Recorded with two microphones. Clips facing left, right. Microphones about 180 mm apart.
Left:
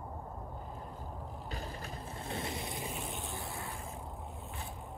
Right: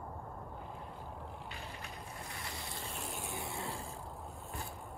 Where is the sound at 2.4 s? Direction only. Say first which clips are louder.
Left 6 dB; 20° left (ahead or behind).